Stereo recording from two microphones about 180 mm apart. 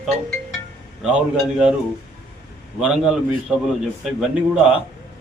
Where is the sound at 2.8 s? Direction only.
5° right (ahead or behind).